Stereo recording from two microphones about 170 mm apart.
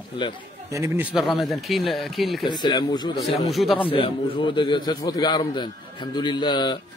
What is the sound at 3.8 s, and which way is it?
A man's voice, 30° left (ahead or behind).